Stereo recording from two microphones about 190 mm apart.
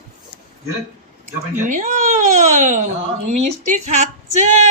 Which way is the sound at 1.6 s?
40° right (ahead or behind).